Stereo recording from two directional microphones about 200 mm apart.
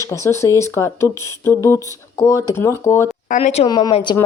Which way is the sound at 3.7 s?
20° left (ahead or behind).